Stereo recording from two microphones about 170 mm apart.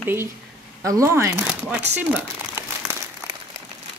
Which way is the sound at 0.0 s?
15° right (ahead or behind).